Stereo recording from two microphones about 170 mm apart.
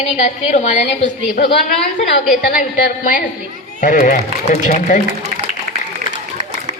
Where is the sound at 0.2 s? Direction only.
45° left (ahead or behind).